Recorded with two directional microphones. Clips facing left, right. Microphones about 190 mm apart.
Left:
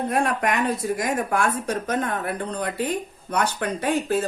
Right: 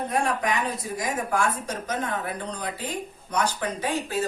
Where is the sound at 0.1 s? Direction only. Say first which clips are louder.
Left 2 dB; 60° left (ahead or behind).